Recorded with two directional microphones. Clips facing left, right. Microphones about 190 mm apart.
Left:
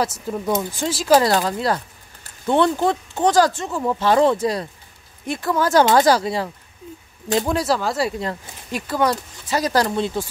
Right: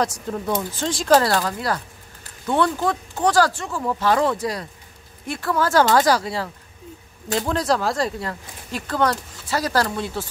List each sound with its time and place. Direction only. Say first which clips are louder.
0.0 s speech: left 1 dB; 5° left (ahead or behind)
1.2 s speech: left 3 dB; 20° left (ahead or behind); by 8.1 s 5° left (ahead or behind)
8.2 s speech: left 3 dB; 20° left (ahead or behind)